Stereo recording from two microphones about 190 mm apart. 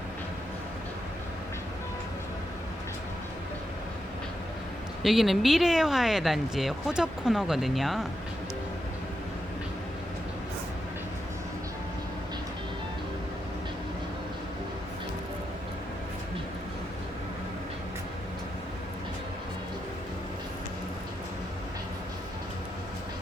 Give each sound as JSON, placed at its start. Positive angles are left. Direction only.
{"t": 5.0, "sound": "speech", "side_deg": 0}